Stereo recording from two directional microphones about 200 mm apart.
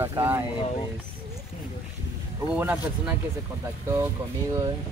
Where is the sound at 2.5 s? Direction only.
10° right (ahead or behind).